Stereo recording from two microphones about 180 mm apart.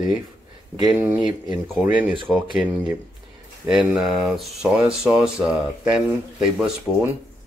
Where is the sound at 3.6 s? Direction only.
5° right (ahead or behind).